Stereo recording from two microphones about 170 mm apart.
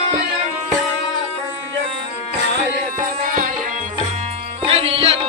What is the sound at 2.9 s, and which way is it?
Music, 55° right (ahead or behind).